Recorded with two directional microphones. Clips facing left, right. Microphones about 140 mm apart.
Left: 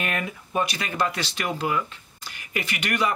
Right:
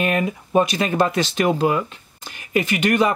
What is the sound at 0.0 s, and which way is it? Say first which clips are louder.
Speech: right 8 dB; 25° right (ahead or behind).